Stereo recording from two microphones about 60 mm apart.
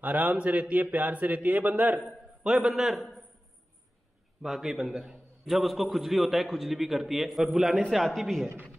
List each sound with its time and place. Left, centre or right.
0.0 s a man's voice: right
2.0 s a man's voice: centre
4.4 s a man's voice: centre